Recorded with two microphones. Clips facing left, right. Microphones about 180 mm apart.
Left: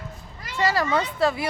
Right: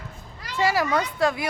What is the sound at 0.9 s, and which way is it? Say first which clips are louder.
Speech: left 1 dB; 5° left (ahead or behind).